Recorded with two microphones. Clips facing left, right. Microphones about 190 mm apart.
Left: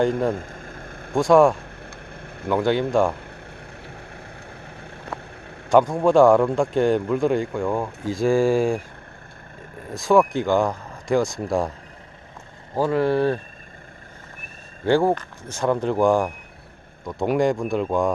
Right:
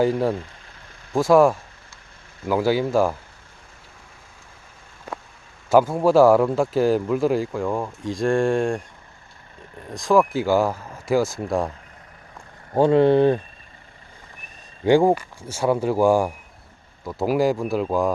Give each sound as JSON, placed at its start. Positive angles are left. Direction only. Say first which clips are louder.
{"t": 0.3, "sound": "vehicle", "louder": "left 2 dB", "side_deg": 50}
{"t": 1.1, "sound": "speech", "louder": "even", "side_deg": -5}
{"t": 1.5, "sound": "a sound", "louder": "left 8 dB", "side_deg": 60}
{"t": 2.5, "sound": "speech", "louder": "even", "side_deg": -5}
{"t": 3.8, "sound": "boat", "louder": "left 10 dB", "side_deg": 65}
{"t": 5.6, "sound": "speech", "louder": "even", "side_deg": -5}
{"t": 9.9, "sound": "speech", "louder": "left 1 dB", "side_deg": 0}
{"t": 12.7, "sound": "speech", "louder": "right 5 dB", "side_deg": -25}
{"t": 14.8, "sound": "speech", "louder": "right 3 dB", "side_deg": -15}